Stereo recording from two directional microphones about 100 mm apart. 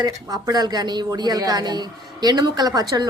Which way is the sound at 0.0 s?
40° right (ahead or behind).